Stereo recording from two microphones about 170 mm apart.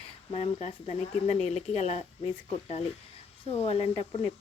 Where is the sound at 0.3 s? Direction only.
35° left (ahead or behind).